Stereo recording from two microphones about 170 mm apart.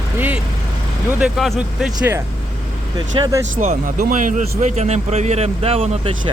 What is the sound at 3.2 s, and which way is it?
Speech, 20° right (ahead or behind).